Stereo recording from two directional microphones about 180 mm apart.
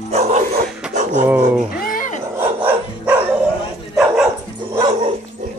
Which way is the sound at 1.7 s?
55° left (ahead or behind).